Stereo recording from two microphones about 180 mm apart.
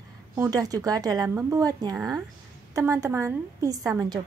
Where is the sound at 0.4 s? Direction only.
20° right (ahead or behind).